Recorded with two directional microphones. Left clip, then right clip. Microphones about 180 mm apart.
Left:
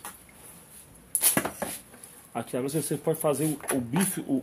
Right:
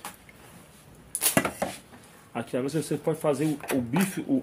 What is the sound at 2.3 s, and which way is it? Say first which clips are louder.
Speech: right 1 dB; 20° left (ahead or behind).